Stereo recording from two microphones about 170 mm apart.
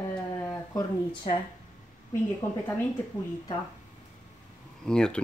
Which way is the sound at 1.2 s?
35° left (ahead or behind).